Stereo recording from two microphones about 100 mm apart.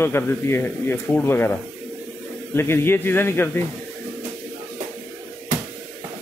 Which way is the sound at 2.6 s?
25° left (ahead or behind).